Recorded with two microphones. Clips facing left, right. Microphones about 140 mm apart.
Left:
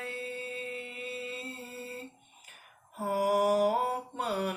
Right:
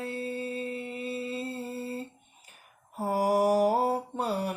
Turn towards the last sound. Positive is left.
turn(degrees=-35)  # may be behind; listen again after turning